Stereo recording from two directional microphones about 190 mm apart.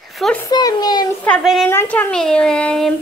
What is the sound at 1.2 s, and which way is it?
Speech, centre (ahead or behind).